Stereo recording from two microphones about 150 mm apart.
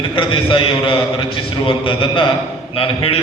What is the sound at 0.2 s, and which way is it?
A man's voice, 35° left (ahead or behind).